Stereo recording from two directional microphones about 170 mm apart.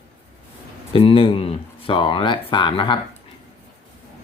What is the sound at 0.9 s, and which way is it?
Speech, 30° left (ahead or behind).